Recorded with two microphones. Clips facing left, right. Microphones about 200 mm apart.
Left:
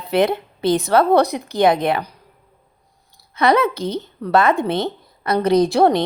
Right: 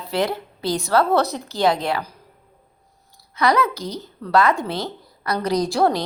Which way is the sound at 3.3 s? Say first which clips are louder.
Left 3 dB; 25° left (ahead or behind).